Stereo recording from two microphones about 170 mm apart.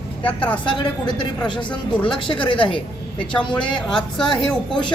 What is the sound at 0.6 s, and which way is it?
Speech, 30° left (ahead or behind).